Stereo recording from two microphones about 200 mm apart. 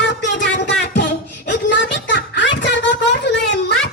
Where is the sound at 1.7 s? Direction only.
60° left (ahead or behind).